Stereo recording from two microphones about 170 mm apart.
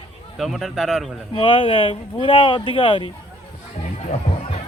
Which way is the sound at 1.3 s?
30° left (ahead or behind).